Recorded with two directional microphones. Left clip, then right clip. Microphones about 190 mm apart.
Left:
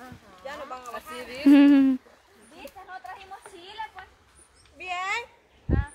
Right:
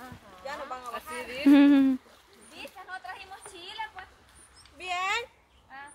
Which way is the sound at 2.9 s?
30° right (ahead or behind).